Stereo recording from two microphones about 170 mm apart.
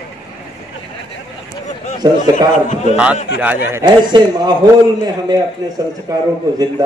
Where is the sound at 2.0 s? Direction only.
25° right (ahead or behind).